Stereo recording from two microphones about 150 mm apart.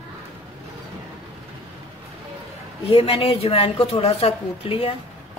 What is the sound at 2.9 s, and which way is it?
A woman's voice, 40° left (ahead or behind).